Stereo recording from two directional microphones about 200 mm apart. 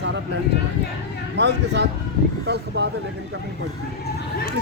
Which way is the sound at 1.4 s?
60° right (ahead or behind).